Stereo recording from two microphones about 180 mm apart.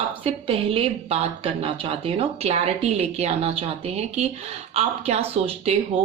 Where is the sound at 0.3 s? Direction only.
30° right (ahead or behind).